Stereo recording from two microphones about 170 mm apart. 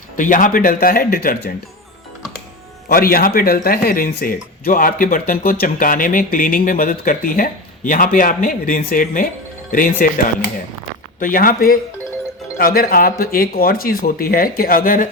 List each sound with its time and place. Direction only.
0.2 s speech: 50° left (ahead or behind)
2.9 s speech: 60° left (ahead or behind)